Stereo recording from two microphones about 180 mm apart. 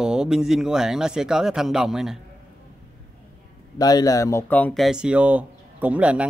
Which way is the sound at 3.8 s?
20° left (ahead or behind).